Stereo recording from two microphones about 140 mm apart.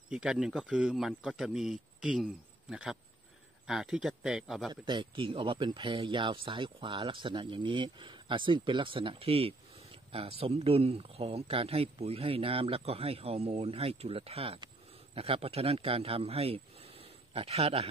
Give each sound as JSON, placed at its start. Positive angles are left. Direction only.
{"t": 0.1, "sound": "a man's voice", "side_deg": -5}
{"t": 4.8, "sound": "a man's voice", "side_deg": -35}